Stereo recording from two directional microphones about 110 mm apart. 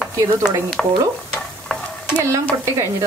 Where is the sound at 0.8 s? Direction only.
5° left (ahead or behind).